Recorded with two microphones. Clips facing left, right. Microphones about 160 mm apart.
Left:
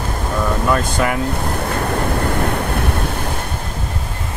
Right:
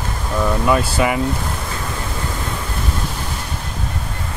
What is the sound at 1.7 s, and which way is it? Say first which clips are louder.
Waves: left 7 dB; 60° left (ahead or behind).